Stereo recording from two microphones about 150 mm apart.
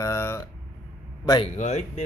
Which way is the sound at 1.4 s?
50° left (ahead or behind).